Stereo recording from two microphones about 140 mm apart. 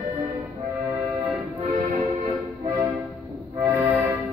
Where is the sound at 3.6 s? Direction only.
15° right (ahead or behind).